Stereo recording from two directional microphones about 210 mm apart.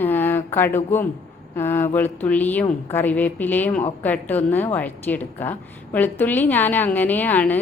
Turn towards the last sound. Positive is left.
turn(degrees=10)  # may be behind; listen again after turning